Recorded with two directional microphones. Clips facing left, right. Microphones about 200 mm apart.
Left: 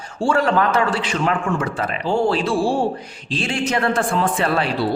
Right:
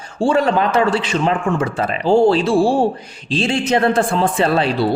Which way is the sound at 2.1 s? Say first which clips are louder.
Right 6 dB; 25° right (ahead or behind).